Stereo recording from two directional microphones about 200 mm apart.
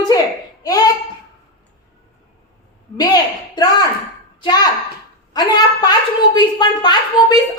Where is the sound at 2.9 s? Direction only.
20° left (ahead or behind).